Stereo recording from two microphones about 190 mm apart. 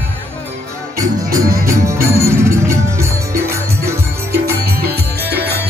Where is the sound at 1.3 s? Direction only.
15° right (ahead or behind).